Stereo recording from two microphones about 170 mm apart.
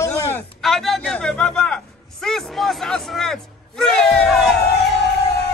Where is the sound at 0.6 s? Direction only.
Centre (ahead or behind).